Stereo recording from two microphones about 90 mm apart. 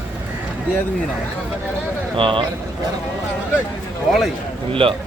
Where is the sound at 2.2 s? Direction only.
70° right (ahead or behind).